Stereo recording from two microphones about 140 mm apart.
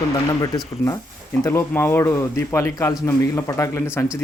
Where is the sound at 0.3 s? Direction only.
30° left (ahead or behind).